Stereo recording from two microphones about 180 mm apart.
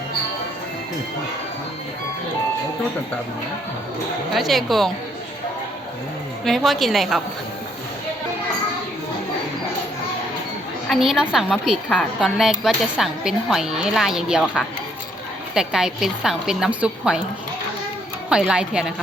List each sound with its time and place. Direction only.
4.4 s a woman's voice: centre (ahead or behind)
6.4 s a woman's voice: centre (ahead or behind)
10.8 s a woman's voice: centre (ahead or behind)
18.3 s a woman's voice: 5° right (ahead or behind)